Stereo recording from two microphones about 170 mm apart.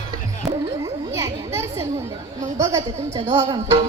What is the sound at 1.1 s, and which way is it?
Children playing, 15° right (ahead or behind).